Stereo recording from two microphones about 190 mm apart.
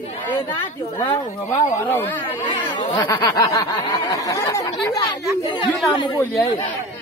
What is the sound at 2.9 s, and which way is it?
Speech, 15° left (ahead or behind).